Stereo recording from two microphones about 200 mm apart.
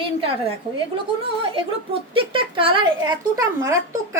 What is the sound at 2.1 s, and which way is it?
A woman's voice, 25° right (ahead or behind).